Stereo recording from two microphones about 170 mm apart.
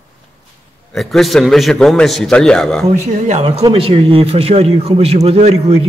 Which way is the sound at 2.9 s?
45° right (ahead or behind).